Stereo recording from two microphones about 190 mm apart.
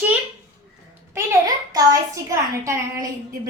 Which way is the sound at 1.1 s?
15° right (ahead or behind).